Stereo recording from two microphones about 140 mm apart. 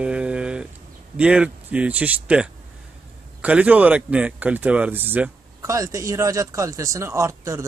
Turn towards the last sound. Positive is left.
turn(degrees=-20)  # may be behind; listen again after turning